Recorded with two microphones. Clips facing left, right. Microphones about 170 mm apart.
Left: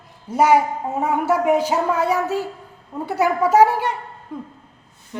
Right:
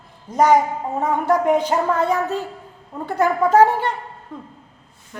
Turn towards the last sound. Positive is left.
turn(degrees=10)  # may be behind; listen again after turning